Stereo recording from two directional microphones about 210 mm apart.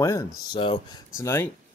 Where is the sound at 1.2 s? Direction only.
10° left (ahead or behind).